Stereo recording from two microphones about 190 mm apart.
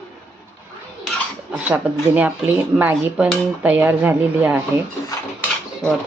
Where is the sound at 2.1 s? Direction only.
10° right (ahead or behind).